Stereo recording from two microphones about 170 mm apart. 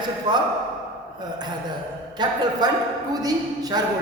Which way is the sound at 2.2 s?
25° right (ahead or behind).